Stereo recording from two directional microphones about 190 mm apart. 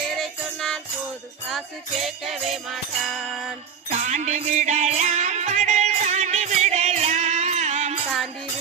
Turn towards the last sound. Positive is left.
turn(degrees=-35)  # may be behind; listen again after turning